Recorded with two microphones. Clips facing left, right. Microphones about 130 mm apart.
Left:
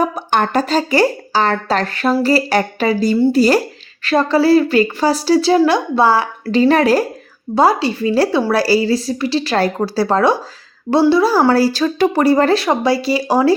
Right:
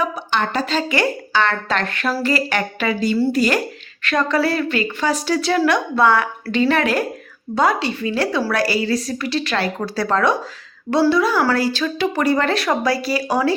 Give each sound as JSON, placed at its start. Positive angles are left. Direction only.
{"t": 0.0, "sound": "a woman's voice", "side_deg": 50}